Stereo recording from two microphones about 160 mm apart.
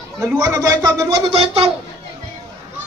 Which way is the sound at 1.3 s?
35° right (ahead or behind).